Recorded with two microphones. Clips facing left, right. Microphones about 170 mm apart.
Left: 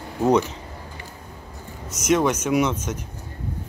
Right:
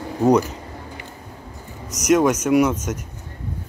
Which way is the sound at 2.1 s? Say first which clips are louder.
Right 4 dB; 5° right (ahead or behind).